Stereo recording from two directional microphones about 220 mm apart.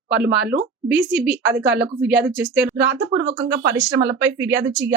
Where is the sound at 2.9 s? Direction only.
50° right (ahead or behind).